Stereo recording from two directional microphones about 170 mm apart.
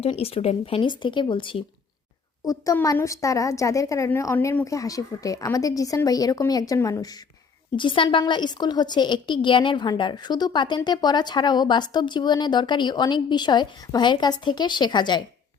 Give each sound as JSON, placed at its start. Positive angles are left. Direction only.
{"t": 0.0, "sound": "a woman's voice", "side_deg": 35}
{"t": 7.8, "sound": "a woman's voice", "side_deg": 30}